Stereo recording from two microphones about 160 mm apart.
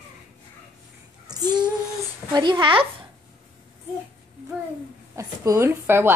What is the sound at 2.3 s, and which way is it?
Speech, 25° right (ahead or behind).